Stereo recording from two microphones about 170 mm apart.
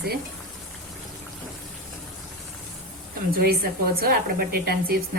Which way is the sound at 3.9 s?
60° right (ahead or behind).